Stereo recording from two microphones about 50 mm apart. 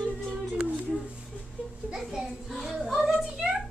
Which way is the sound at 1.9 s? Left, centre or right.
Centre.